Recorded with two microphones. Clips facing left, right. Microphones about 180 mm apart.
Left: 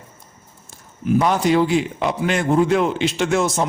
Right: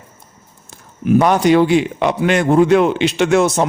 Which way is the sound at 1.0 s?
65° right (ahead or behind).